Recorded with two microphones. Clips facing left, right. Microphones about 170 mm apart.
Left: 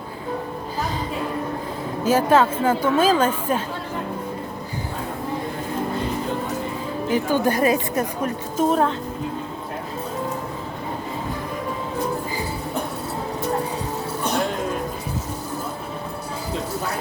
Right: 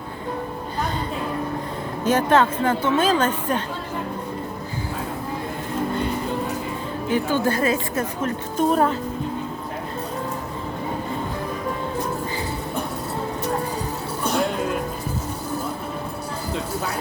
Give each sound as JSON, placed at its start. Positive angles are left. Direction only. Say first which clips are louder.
{"t": 2.0, "sound": "a woman's voice", "louder": "left 1 dB", "side_deg": 10}
{"t": 7.1, "sound": "a woman's voice", "louder": "left 1 dB", "side_deg": 15}
{"t": 8.5, "sound": "speech", "louder": "even", "side_deg": 0}